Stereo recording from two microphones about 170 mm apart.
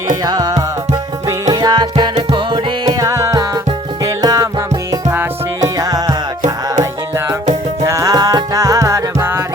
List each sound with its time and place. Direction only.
0.3 s music: 20° right (ahead or behind)
7.9 s music: 20° right (ahead or behind)